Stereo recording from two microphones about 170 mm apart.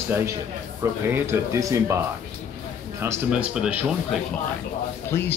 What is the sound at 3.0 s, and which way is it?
Speech, 10° right (ahead or behind).